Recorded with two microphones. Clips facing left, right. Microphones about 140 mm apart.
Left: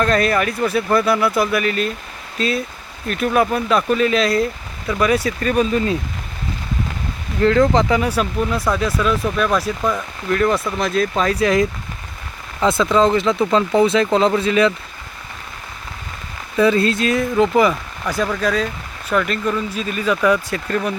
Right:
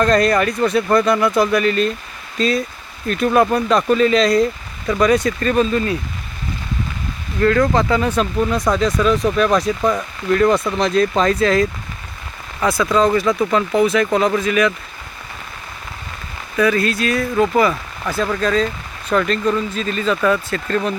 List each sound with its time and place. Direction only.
0.0 s speech: 5° left (ahead or behind)
7.4 s speech: 20° left (ahead or behind)
16.6 s speech: 25° left (ahead or behind); by 20.9 s 10° left (ahead or behind)